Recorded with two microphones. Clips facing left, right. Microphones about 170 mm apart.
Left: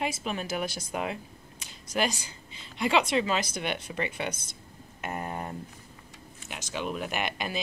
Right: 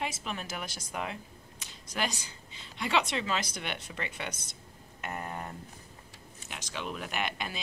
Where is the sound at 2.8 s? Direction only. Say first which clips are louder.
Left 5 dB; 10° left (ahead or behind).